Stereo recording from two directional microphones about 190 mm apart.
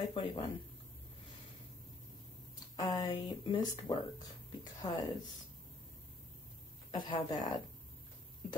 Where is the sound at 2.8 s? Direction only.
20° left (ahead or behind).